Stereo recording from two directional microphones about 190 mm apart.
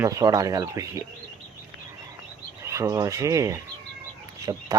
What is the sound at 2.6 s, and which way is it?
Speech, 15° right (ahead or behind).